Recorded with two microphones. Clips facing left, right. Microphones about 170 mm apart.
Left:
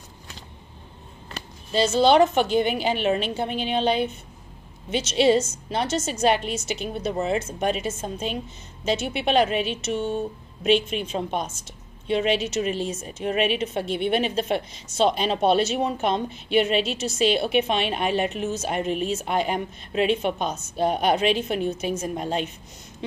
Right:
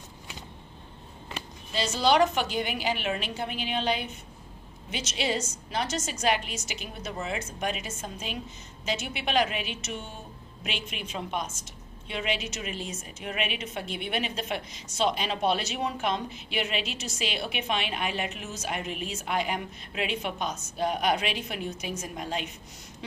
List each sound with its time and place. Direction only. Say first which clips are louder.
1.7 s a woman's voice: left 7 dB; 30° left (ahead or behind)